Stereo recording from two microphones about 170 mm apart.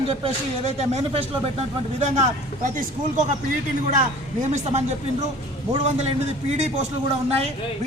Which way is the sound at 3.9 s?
45° right (ahead or behind).